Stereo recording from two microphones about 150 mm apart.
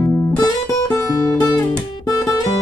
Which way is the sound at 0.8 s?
20° left (ahead or behind).